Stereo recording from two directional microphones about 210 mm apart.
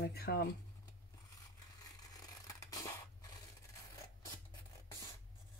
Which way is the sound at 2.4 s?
15° left (ahead or behind).